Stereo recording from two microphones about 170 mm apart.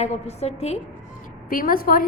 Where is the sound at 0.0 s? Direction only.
40° left (ahead or behind).